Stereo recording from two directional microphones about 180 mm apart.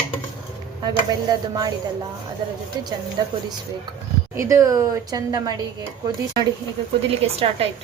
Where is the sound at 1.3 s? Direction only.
20° right (ahead or behind).